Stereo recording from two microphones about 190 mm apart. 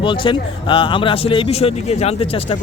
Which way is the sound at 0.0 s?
25° left (ahead or behind).